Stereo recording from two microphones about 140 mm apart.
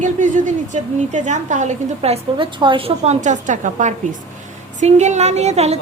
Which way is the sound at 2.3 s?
35° right (ahead or behind).